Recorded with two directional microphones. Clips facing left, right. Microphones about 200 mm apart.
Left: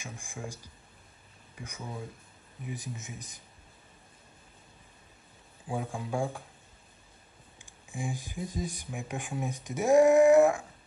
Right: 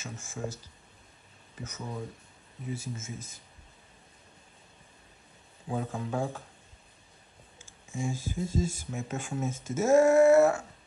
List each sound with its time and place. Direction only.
0.0 s speech: 15° left (ahead or behind)
1.6 s speech: 10° left (ahead or behind)
5.7 s speech: 10° left (ahead or behind)
7.6 s speech: 15° left (ahead or behind)